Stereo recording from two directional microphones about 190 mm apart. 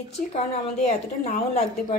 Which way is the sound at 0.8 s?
35° left (ahead or behind).